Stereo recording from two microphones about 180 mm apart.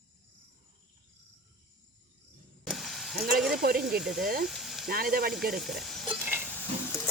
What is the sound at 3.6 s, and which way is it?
Speech, 55° right (ahead or behind).